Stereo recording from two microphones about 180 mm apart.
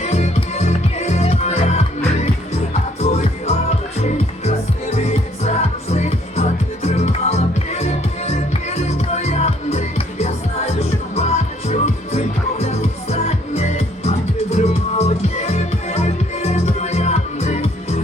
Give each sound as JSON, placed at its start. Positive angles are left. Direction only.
{"t": 0.0, "sound": "music", "side_deg": 40}
{"t": 3.0, "sound": "music", "side_deg": 35}